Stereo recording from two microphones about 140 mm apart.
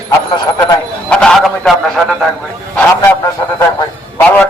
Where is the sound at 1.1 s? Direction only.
5° left (ahead or behind).